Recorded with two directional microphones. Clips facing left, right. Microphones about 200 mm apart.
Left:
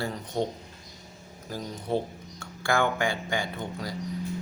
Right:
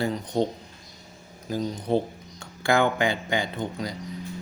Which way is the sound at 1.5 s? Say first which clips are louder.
Right 5 dB; 20° right (ahead or behind).